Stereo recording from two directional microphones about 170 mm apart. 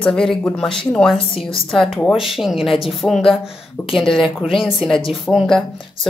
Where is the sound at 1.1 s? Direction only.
30° left (ahead or behind).